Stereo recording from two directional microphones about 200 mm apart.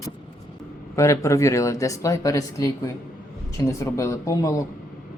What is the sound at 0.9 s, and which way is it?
Speech, 15° left (ahead or behind).